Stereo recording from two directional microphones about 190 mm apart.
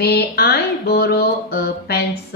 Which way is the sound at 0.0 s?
55° left (ahead or behind).